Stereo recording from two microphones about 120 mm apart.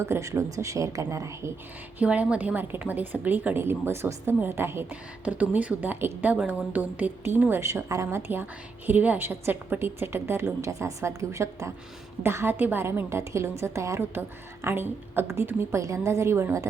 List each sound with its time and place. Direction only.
0.0 s a woman's voice: 25° right (ahead or behind)
2.0 s a woman's voice: 10° right (ahead or behind)